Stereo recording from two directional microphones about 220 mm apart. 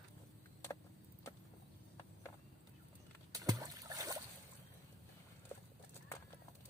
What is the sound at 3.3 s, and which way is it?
Boat, 15° right (ahead or behind).